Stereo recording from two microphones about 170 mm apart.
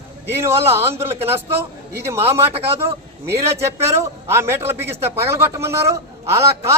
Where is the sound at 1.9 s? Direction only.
15° right (ahead or behind).